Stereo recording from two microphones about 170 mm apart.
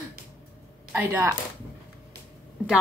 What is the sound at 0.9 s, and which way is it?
Speech, 15° right (ahead or behind).